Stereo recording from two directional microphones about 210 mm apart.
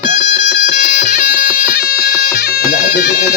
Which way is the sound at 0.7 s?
40° left (ahead or behind).